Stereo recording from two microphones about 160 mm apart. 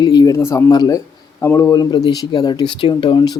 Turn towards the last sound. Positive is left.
turn(degrees=30)  # may be behind; listen again after turning